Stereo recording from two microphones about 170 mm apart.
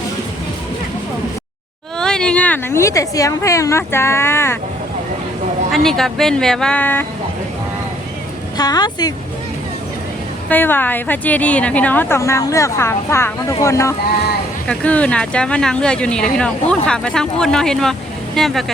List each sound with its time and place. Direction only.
2.0 s a woman's voice: 5° left (ahead or behind)
5.7 s speech: centre (ahead or behind)
8.5 s a woman's voice: 25° left (ahead or behind)
10.5 s a woman's voice: 10° left (ahead or behind)